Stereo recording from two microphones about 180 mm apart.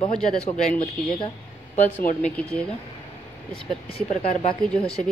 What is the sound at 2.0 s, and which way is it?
Speech, 45° left (ahead or behind).